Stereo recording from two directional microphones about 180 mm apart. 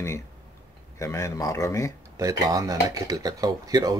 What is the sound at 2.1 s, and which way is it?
Speech, 20° right (ahead or behind).